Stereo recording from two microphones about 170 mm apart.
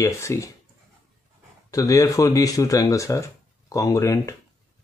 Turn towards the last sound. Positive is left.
turn(degrees=20)  # may be behind; listen again after turning